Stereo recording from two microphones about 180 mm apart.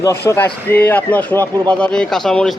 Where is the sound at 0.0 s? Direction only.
15° left (ahead or behind).